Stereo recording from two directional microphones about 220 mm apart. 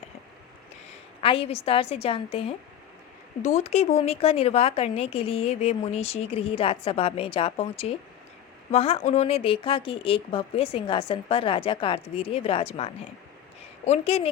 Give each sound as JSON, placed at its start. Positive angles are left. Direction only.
{"t": 1.2, "sound": "speech", "side_deg": 25}